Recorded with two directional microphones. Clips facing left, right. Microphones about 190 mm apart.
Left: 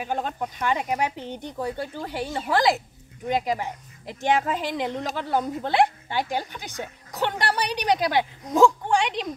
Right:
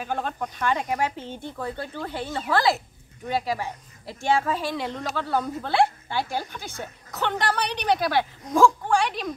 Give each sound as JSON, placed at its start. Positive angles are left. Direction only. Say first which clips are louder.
{"t": 0.0, "sound": "a woman's voice", "louder": "left 1 dB", "side_deg": 15}